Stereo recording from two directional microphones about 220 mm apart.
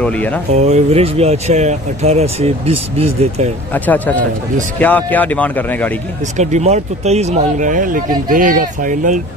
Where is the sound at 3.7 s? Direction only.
10° left (ahead or behind).